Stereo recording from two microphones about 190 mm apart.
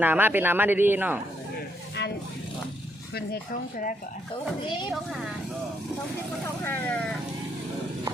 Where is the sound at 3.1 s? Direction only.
50° left (ahead or behind).